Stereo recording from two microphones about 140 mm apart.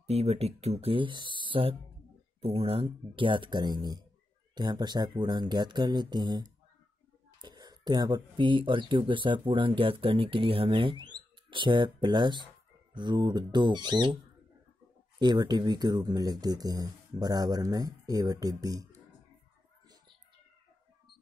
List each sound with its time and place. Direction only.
0.0 s speech: 50° right (ahead or behind); by 6.4 s 30° right (ahead or behind)
7.4 s speech: 30° right (ahead or behind)
15.1 s speech: 30° right (ahead or behind)